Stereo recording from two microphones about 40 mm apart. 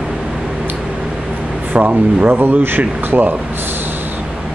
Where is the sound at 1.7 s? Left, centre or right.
Right.